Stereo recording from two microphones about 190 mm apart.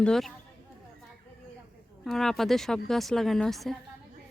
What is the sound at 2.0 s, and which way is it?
Speech, centre (ahead or behind).